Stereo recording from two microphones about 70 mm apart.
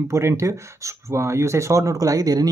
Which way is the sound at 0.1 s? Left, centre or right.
Right.